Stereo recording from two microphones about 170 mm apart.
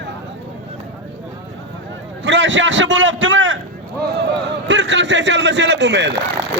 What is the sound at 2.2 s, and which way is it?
A man's voice, 90° right.